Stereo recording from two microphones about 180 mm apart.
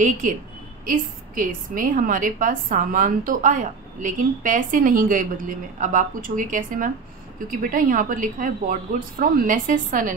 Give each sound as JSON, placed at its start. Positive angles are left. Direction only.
{"t": 0.2, "sound": "a woman's voice", "side_deg": -45}